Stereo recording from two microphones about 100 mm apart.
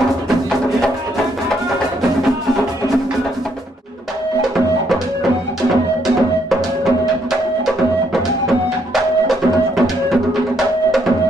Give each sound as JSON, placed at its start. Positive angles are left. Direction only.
{"t": 4.4, "sound": "music", "side_deg": 0}
{"t": 7.6, "sound": "music", "side_deg": 0}